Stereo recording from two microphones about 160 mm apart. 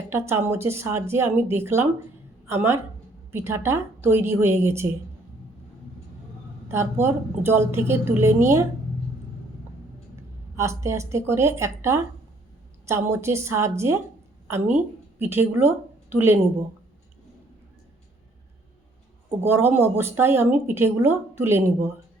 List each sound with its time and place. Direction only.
0.1 s speech: 15° right (ahead or behind)
7.0 s speech: 15° right (ahead or behind)
10.2 s a woman's voice: 20° right (ahead or behind)
15.2 s a woman's voice: 15° right (ahead or behind)
19.5 s speech: 15° right (ahead or behind)